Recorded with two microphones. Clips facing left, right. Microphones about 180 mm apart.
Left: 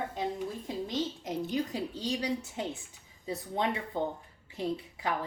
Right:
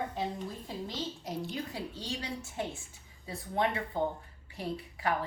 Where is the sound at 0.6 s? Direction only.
20° left (ahead or behind).